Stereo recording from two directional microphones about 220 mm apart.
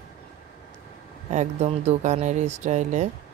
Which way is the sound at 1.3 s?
30° right (ahead or behind).